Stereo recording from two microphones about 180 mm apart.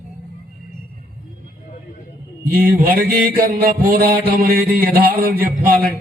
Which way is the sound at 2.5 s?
50° right (ahead or behind).